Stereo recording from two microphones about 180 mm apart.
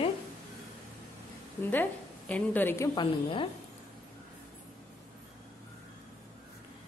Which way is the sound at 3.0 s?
30° left (ahead or behind).